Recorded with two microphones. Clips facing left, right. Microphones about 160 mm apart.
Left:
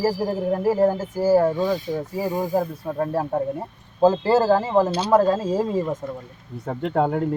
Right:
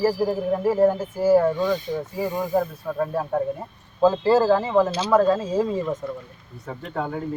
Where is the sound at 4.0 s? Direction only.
40° left (ahead or behind).